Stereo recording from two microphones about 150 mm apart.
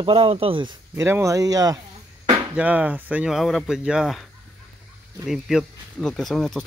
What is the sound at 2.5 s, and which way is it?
Speech, 10° right (ahead or behind).